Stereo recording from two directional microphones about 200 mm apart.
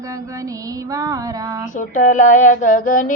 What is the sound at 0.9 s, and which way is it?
Child singing, 15° right (ahead or behind).